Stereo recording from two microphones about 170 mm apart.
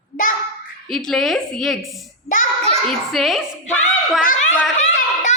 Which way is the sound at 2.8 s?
Centre (ahead or behind).